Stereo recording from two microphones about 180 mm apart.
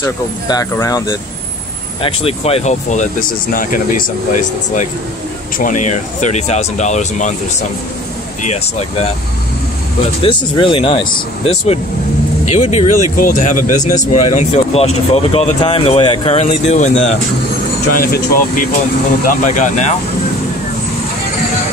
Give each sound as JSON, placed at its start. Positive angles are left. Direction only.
{"t": 0.0, "sound": "speech", "side_deg": 20}
{"t": 2.0, "sound": "speech", "side_deg": 35}
{"t": 10.2, "sound": "speech", "side_deg": 30}
{"t": 18.0, "sound": "speech", "side_deg": 55}
{"t": 19.2, "sound": "speech", "side_deg": 45}